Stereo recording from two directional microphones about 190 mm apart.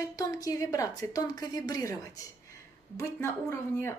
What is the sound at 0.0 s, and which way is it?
A woman's voice, 15° left (ahead or behind).